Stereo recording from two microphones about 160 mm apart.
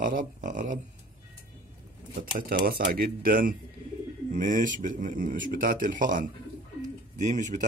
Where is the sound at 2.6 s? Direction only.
65° right (ahead or behind); by 7.6 s 50° right (ahead or behind).